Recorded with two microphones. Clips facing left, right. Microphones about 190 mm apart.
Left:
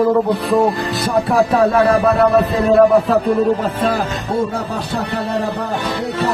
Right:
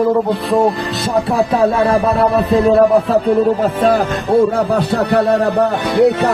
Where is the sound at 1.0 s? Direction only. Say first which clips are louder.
Even; 25° right (ahead or behind).